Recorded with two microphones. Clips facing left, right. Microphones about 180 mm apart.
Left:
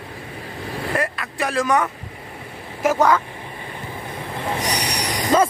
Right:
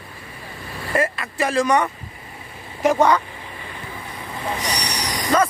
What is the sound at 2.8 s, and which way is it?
Speech, centre (ahead or behind).